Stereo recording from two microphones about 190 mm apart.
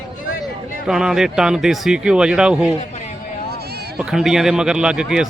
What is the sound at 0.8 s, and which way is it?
Speech, 5° right (ahead or behind).